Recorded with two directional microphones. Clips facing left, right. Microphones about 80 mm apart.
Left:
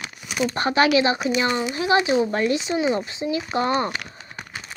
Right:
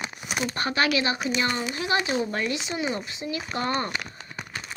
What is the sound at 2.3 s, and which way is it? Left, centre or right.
Speech, left.